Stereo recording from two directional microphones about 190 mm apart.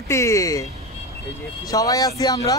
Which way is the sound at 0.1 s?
15° left (ahead or behind).